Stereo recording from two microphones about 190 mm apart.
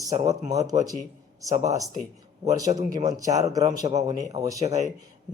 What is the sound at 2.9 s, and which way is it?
A man's voice, 20° right (ahead or behind).